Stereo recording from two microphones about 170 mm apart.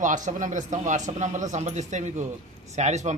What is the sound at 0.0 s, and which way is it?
A man's voice, 45° right (ahead or behind).